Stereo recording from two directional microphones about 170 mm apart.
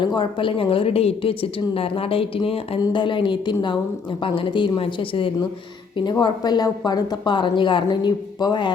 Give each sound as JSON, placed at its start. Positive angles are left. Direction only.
{"t": 0.0, "sound": "a woman's voice", "side_deg": 25}